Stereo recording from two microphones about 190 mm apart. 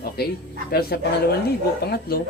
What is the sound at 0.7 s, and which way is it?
Speech, 55° left (ahead or behind).